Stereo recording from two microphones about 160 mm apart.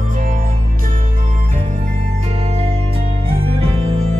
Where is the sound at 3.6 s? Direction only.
35° right (ahead or behind).